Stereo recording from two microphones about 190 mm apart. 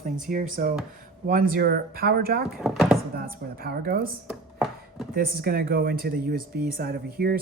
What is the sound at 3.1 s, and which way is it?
Speech, 50° right (ahead or behind).